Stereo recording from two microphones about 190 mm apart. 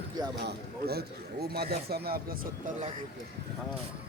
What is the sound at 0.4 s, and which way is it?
Speech, 55° right (ahead or behind).